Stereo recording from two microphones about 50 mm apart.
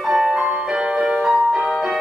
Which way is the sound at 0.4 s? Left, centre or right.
Centre.